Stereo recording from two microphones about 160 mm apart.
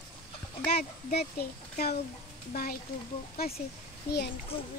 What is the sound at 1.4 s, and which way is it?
Speech, 80° left.